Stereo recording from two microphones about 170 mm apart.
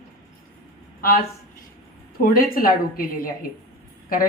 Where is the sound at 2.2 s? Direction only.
60° left (ahead or behind).